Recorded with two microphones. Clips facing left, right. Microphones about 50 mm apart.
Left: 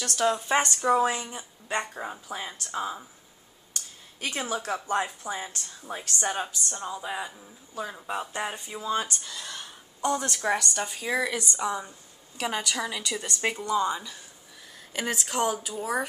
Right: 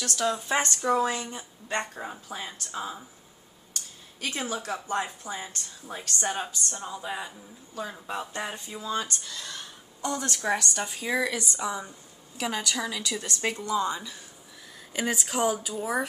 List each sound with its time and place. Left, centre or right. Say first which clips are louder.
0.0 s speech: left 2 dB; centre
4.5 s speech: left 2 dB; left; by 16.1 s centre